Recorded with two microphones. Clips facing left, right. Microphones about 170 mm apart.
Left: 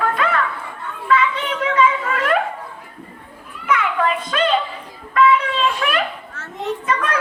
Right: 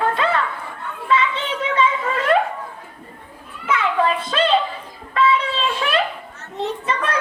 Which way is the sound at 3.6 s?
30° right (ahead or behind).